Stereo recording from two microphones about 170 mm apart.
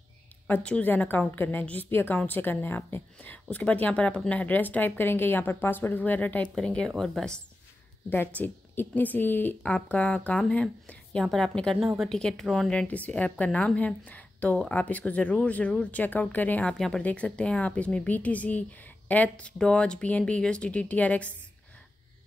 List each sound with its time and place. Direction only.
0.5 s a woman's voice: 5° left (ahead or behind)